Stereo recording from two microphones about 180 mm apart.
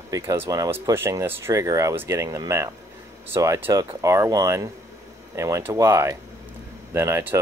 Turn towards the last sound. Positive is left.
turn(degrees=-15)  # may be behind; listen again after turning